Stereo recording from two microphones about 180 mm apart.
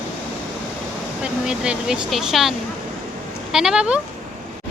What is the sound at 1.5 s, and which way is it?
Speech, 5° right (ahead or behind).